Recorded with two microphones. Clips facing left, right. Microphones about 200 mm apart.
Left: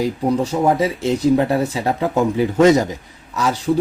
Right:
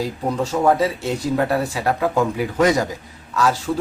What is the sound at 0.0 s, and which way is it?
Speech, 15° left (ahead or behind).